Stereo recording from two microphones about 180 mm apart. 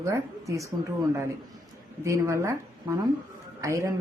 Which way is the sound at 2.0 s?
15° right (ahead or behind).